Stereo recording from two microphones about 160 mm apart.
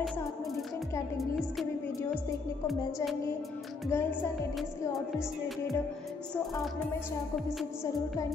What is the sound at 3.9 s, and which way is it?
Speech, 15° left (ahead or behind).